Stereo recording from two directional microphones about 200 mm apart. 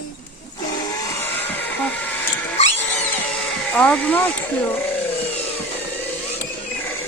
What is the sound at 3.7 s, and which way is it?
Speech, 5° left (ahead or behind).